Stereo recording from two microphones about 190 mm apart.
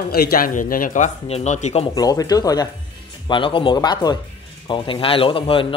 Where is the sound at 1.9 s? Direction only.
20° left (ahead or behind).